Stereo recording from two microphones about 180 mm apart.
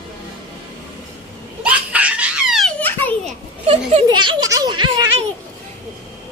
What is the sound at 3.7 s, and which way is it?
Speech, 35° right (ahead or behind).